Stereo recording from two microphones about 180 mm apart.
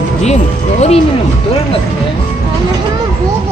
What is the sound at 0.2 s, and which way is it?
Speech, 35° left (ahead or behind).